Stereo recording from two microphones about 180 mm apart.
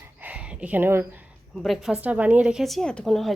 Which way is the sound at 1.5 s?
Centre (ahead or behind).